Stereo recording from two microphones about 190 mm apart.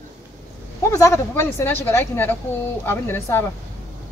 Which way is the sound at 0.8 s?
15° left (ahead or behind).